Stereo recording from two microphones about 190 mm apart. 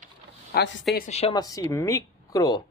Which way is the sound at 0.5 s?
65° left (ahead or behind).